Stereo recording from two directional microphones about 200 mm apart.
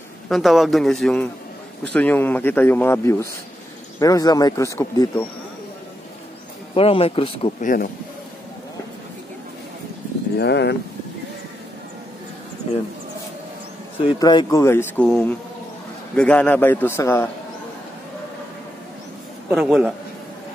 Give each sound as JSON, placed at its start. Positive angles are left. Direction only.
{"t": 0.3, "sound": "a man's voice", "side_deg": 0}
{"t": 6.7, "sound": "speech", "side_deg": 30}
{"t": 7.6, "sound": "speech", "side_deg": 45}
{"t": 10.4, "sound": "speech", "side_deg": 60}
{"t": 14.0, "sound": "speech", "side_deg": 20}
{"t": 19.5, "sound": "a man's voice", "side_deg": -5}